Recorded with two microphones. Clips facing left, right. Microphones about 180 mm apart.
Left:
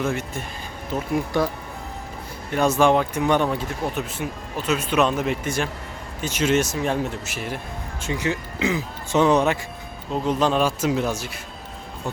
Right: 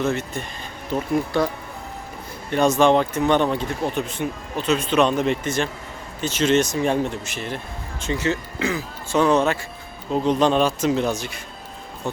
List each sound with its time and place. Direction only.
0.0 s speech: 10° left (ahead or behind)
2.5 s speech: 5° left (ahead or behind)
10.1 s speech: 5° left (ahead or behind)